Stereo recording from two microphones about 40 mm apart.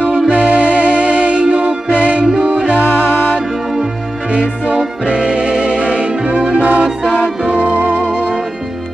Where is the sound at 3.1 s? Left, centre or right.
Left.